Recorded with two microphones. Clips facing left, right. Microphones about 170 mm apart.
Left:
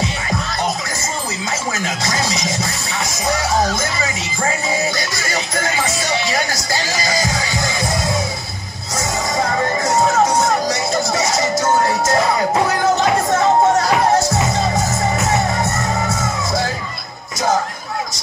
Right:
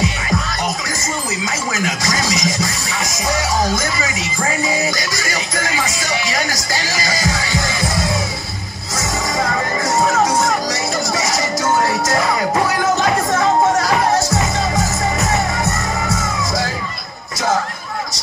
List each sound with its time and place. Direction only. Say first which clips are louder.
2.0 s a sound: right 1 dB; 25° left (ahead or behind)
6.2 s music: left 1 dB; 25° left (ahead or behind)
9.8 s music: even; 25° left (ahead or behind)